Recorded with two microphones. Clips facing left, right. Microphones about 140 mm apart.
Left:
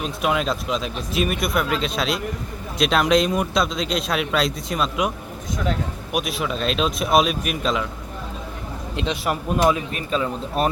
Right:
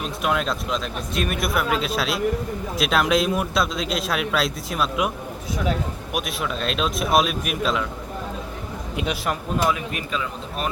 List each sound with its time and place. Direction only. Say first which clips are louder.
0.0 s speech: left 1 dB; centre (ahead or behind)
6.1 s speech: left 3 dB; centre (ahead or behind)
9.0 s speech: left 1 dB; 10° right (ahead or behind)
9.6 s speech: left 4 dB; 20° left (ahead or behind)
9.9 s speech: left 4 dB; 35° left (ahead or behind)